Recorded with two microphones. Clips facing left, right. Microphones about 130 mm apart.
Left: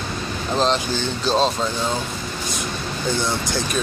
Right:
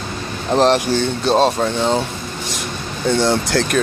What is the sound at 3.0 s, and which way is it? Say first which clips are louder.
Speech: right 8 dB; 70° right (ahead or behind).